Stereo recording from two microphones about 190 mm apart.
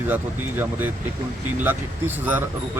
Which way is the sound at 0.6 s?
10° right (ahead or behind).